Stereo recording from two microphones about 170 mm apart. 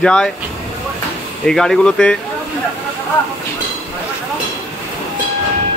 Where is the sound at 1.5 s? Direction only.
5° left (ahead or behind).